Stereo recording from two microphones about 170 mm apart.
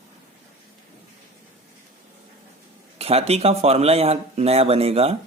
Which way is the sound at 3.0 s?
35° right (ahead or behind).